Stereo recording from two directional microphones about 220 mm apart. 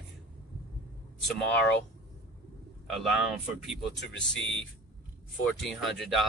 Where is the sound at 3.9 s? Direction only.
55° left (ahead or behind).